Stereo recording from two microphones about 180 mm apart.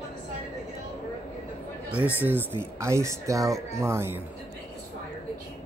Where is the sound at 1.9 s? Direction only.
10° right (ahead or behind).